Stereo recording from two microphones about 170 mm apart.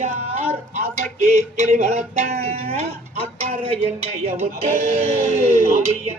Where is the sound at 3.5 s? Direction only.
35° right (ahead or behind).